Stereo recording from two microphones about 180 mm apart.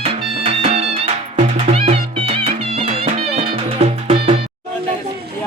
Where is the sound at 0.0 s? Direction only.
30° right (ahead or behind).